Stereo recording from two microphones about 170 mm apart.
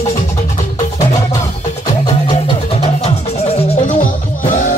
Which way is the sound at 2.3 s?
35° left (ahead or behind).